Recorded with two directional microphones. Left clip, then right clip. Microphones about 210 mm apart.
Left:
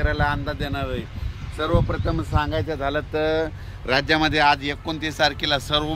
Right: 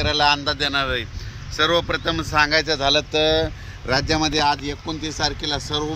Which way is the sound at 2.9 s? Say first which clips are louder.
Right 4 dB; 50° right (ahead or behind).